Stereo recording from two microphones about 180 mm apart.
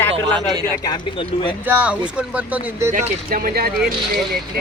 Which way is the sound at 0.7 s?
25° left (ahead or behind).